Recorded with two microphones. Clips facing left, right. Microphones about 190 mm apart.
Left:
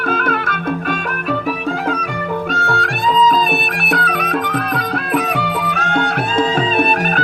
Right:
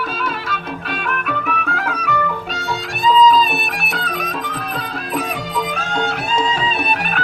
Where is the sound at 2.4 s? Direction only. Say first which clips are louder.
Left 5 dB; 55° left (ahead or behind).